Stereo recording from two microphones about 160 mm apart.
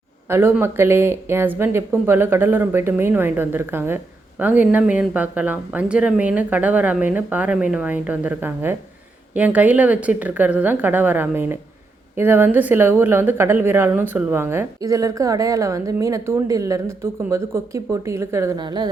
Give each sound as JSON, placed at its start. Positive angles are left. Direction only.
{"t": 0.3, "sound": "speech", "side_deg": -15}